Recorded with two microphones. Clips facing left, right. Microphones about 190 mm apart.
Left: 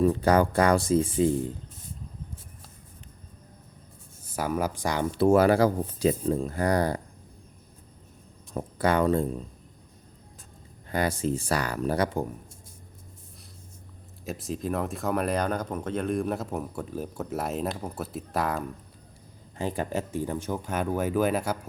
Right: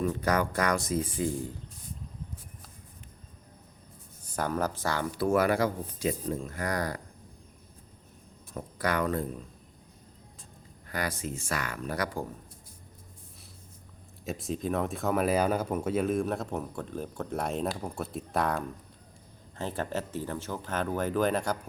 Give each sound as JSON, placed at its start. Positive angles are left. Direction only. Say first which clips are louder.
{"t": 0.0, "sound": "speech", "louder": "left 6 dB", "side_deg": 30}
{"t": 4.2, "sound": "speech", "louder": "left 2 dB", "side_deg": 10}
{"t": 8.5, "sound": "speech", "louder": "left 5 dB", "side_deg": 25}
{"t": 10.8, "sound": "speech", "louder": "left 7 dB", "side_deg": 25}
{"t": 14.3, "sound": "speech", "louder": "left 1 dB", "side_deg": 0}
{"t": 19.5, "sound": "speech", "louder": "left 3 dB", "side_deg": 15}